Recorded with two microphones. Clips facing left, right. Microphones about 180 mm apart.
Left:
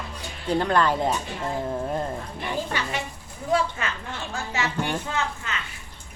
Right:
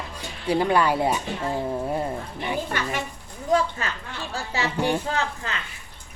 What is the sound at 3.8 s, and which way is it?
Speech, 35° right (ahead or behind).